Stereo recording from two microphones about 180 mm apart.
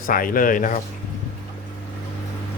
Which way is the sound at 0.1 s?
50° left (ahead or behind).